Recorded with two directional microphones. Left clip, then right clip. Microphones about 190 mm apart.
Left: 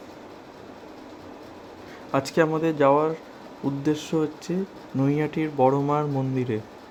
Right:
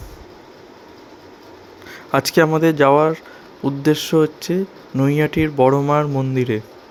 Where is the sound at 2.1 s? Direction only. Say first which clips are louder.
Right 7 dB; 25° right (ahead or behind).